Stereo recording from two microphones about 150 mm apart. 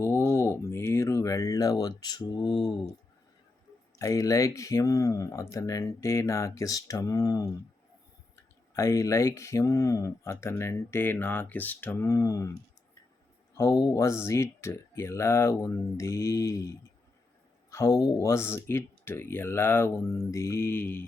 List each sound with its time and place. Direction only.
0.0 s a sound: 20° left (ahead or behind)
3.9 s speech: 20° left (ahead or behind)
8.7 s speech: 20° left (ahead or behind)
13.6 s speech: 20° left (ahead or behind)